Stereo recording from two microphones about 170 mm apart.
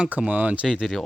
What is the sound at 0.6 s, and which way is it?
Speech, centre (ahead or behind).